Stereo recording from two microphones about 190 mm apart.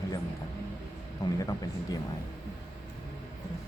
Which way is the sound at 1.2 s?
20° left (ahead or behind).